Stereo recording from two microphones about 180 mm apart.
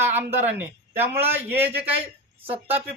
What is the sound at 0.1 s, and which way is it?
A man's voice, 10° right (ahead or behind).